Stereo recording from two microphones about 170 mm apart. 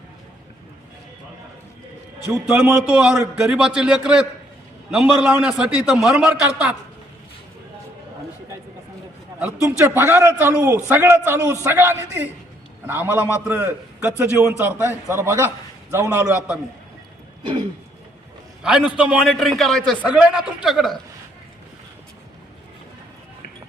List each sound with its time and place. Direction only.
2.2 s a man's voice: 10° right (ahead or behind)
9.4 s a man's voice: 15° right (ahead or behind)
18.6 s a man's voice: 5° right (ahead or behind)